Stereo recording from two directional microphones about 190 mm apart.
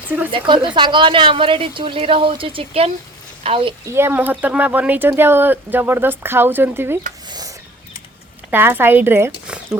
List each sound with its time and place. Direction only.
0.3 s a woman's voice: 25° right (ahead or behind)
3.8 s speech: 10° right (ahead or behind)
7.3 s a sound: 20° right (ahead or behind)
8.4 s speech: 10° right (ahead or behind)